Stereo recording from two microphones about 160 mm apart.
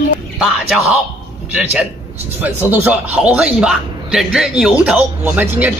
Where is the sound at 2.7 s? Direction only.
10° right (ahead or behind).